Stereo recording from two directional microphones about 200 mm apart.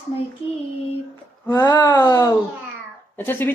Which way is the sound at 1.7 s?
20° left (ahead or behind).